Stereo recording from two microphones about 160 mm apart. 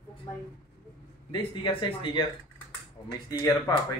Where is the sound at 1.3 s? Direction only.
30° left (ahead or behind).